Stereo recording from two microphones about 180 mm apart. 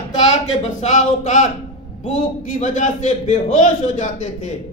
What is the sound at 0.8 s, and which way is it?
A man's voice, 40° left (ahead or behind).